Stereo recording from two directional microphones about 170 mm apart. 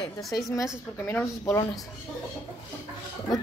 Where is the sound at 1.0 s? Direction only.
15° left (ahead or behind).